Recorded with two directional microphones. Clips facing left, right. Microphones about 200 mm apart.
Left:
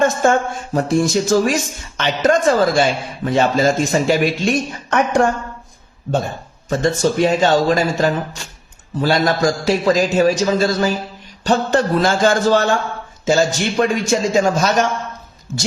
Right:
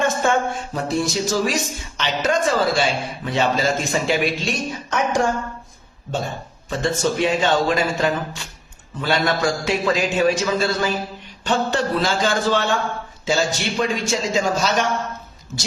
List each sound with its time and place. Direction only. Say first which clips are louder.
0.0 s speech: left 4 dB; 45° left (ahead or behind)
4.9 s a woman's voice: left 5 dB; 60° left (ahead or behind)
6.7 s a man's voice: left 5 dB; 40° left (ahead or behind)